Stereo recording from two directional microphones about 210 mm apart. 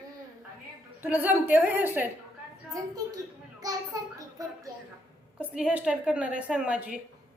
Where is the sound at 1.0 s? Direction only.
10° right (ahead or behind).